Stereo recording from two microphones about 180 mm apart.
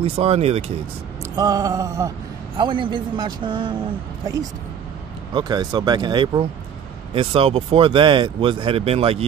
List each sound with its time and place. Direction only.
0.0 s speech: 35° right (ahead or behind)
1.3 s speech: 20° right (ahead or behind)
5.3 s speech: 25° right (ahead or behind)